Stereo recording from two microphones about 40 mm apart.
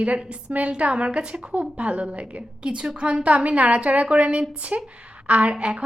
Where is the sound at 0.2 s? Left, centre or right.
Right.